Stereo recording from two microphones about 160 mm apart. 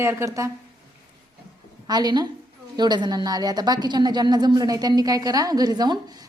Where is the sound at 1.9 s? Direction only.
25° right (ahead or behind).